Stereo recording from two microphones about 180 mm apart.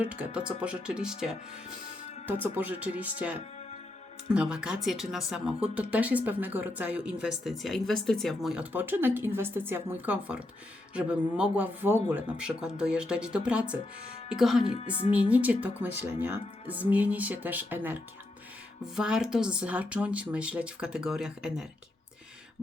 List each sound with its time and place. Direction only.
0.0 s speech: 10° right (ahead or behind)
14.6 s a woman's voice: 30° left (ahead or behind)
15.3 s speech: 10° right (ahead or behind)
18.9 s speech: 5° right (ahead or behind)